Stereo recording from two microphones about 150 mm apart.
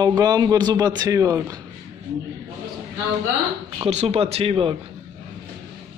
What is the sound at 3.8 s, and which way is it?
Speech, 45° right (ahead or behind).